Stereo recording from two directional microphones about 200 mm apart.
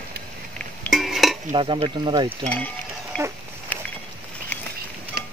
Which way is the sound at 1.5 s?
30° right (ahead or behind).